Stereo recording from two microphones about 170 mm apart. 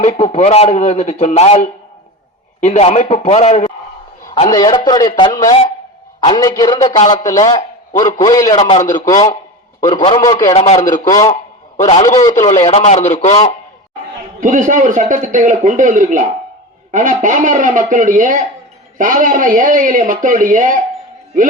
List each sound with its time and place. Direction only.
0.0 s a man's voice: 40° left (ahead or behind)
4.5 s a man's voice: 25° left (ahead or behind)
8.5 s a man's voice: 35° left (ahead or behind)
14.4 s a man's voice: 50° right (ahead or behind)